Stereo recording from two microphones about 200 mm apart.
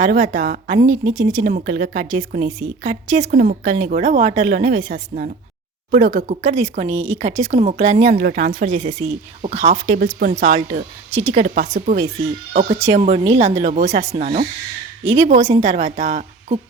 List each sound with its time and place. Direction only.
0.0 s speech: 40° right (ahead or behind)
1.1 s speech: 20° right (ahead or behind)
1.5 s a woman's voice: 40° right (ahead or behind)